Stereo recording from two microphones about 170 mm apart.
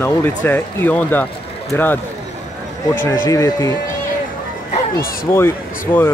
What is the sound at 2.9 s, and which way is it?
Speech, 15° left (ahead or behind).